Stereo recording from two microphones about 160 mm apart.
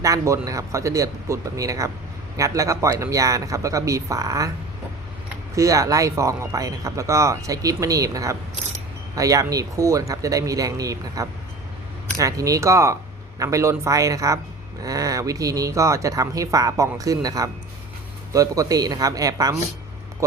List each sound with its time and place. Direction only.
0.0 s speech: 20° right (ahead or behind)
5.5 s speech: 20° right (ahead or behind)